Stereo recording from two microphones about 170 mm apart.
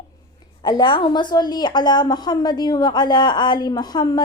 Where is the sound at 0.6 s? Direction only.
25° left (ahead or behind).